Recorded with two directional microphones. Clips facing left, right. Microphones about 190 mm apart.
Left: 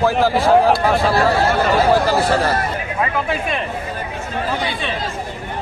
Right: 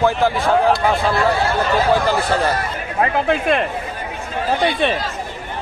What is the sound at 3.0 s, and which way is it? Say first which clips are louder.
Speech: right 5 dB; 60° right (ahead or behind).